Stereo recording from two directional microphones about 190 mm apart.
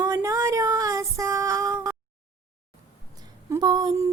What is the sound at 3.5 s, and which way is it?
Female singing, 20° right (ahead or behind).